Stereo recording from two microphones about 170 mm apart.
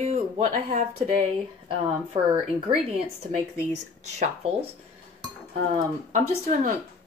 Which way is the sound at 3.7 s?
40° right (ahead or behind).